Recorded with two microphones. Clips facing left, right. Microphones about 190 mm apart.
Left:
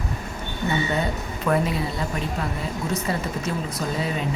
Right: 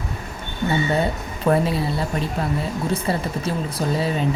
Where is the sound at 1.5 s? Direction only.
30° right (ahead or behind).